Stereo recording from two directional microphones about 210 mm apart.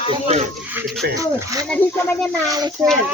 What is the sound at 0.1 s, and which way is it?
Speech, 30° right (ahead or behind).